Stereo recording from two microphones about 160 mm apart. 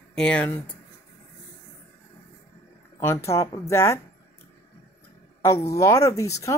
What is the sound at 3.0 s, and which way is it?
A woman's voice, 15° left (ahead or behind).